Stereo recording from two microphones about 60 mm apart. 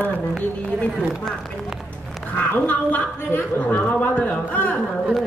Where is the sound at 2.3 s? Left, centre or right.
Left.